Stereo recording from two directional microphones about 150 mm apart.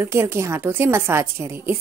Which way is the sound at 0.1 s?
20° right (ahead or behind).